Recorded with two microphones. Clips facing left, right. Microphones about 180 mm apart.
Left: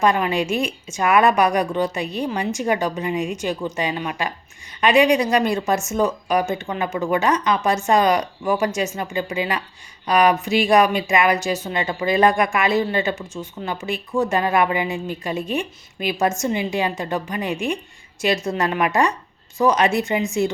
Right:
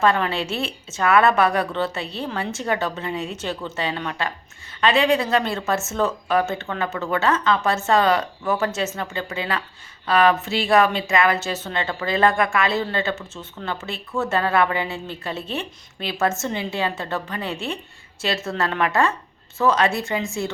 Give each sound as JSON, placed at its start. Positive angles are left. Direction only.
{"t": 0.0, "sound": "speech", "side_deg": 15}